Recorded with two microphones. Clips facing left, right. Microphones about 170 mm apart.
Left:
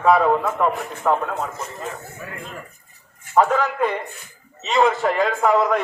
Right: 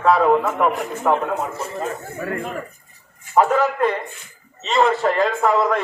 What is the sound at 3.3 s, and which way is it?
A man's voice, 5° right (ahead or behind).